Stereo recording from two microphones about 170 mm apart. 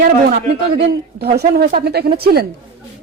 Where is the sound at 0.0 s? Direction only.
55° right (ahead or behind).